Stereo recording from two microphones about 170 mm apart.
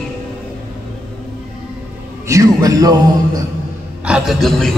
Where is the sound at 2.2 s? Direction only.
20° right (ahead or behind).